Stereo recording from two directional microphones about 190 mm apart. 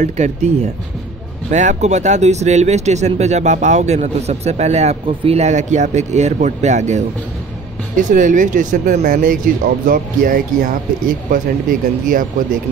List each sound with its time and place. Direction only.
0.0 s speech: 35° right (ahead or behind)
1.5 s speech: 40° right (ahead or behind)